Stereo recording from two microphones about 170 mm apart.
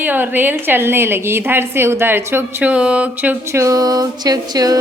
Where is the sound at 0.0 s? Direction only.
10° right (ahead or behind).